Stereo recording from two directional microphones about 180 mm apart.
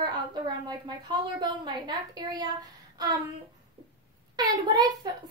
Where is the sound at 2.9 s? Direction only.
20° right (ahead or behind).